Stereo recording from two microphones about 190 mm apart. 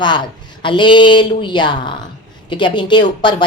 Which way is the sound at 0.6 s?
25° left (ahead or behind).